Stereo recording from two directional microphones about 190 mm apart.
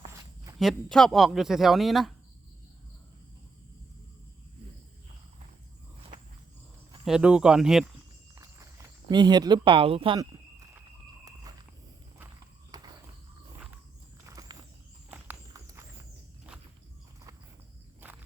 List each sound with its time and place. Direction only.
0.6 s speech: centre (ahead or behind)
7.0 s speech: 5° right (ahead or behind)
9.0 s speech: 20° right (ahead or behind)
11.5 s walk: 20° right (ahead or behind)
14.5 s walk: 25° right (ahead or behind)
15.1 s walk: 10° right (ahead or behind)